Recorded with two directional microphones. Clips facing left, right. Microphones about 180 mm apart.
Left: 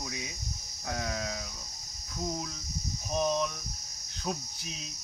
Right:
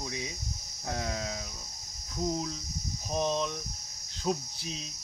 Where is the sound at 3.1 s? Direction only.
25° right (ahead or behind).